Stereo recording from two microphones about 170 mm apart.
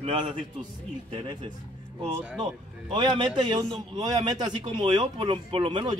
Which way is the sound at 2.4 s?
25° right (ahead or behind).